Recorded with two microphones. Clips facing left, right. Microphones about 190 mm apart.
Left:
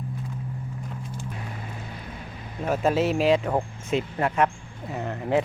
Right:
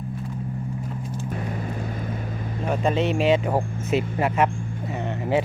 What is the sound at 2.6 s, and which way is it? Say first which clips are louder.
Speech: even; 5° left (ahead or behind).